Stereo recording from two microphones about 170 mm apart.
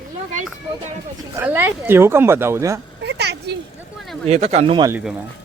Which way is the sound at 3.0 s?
75° right (ahead or behind).